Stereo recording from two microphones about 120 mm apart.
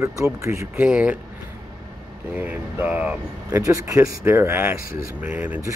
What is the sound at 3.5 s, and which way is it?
Speech, 25° right (ahead or behind).